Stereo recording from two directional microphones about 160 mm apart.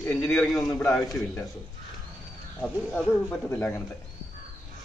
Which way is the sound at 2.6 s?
5° left (ahead or behind).